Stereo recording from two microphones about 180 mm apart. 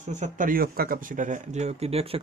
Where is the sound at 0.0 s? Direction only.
40° right (ahead or behind).